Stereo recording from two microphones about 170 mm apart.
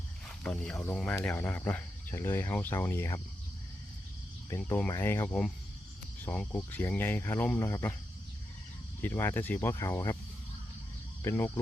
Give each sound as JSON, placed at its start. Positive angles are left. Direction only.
{"t": 0.3, "sound": "speech", "side_deg": 5}
{"t": 4.4, "sound": "speech", "side_deg": 15}
{"t": 9.0, "sound": "speech", "side_deg": 10}
{"t": 11.2, "sound": "speech", "side_deg": 15}